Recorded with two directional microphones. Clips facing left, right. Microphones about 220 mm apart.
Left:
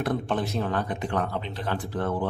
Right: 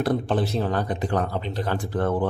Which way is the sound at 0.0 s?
35° right (ahead or behind).